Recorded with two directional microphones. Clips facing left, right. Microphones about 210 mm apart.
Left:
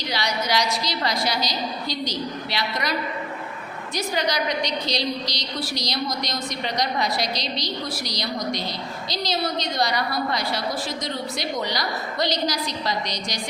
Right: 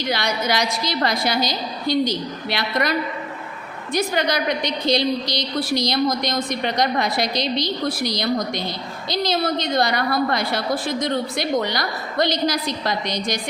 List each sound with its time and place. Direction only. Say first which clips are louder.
0.1 s a woman's voice: right 2 dB; 55° right (ahead or behind)
3.9 s a woman's voice: right 4 dB; 55° right (ahead or behind)